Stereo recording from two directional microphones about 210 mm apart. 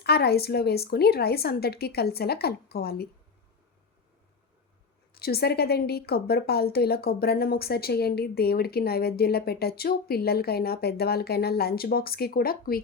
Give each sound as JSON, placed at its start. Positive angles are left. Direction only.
{"t": 0.0, "sound": "a woman's voice", "side_deg": 50}
{"t": 5.1, "sound": "a woman's voice", "side_deg": 45}